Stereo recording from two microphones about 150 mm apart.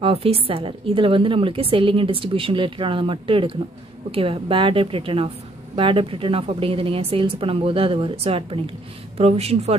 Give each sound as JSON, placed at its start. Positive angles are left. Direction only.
{"t": 0.0, "sound": "a woman's voice", "side_deg": -40}